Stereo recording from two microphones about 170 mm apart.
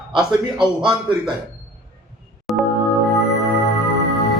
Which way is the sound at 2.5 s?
Centre (ahead or behind).